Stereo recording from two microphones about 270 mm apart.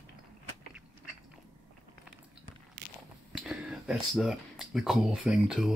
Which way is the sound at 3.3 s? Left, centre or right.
Centre.